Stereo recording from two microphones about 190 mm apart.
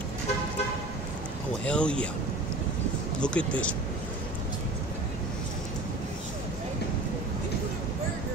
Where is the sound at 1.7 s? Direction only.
5° left (ahead or behind).